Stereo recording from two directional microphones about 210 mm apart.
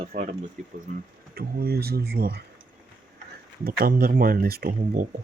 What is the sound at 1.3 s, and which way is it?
Speech, 45° right (ahead or behind).